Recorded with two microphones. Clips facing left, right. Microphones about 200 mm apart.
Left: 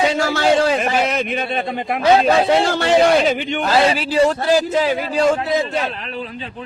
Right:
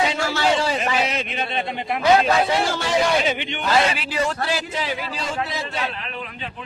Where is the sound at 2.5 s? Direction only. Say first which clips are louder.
Left 7 dB; 60° left (ahead or behind).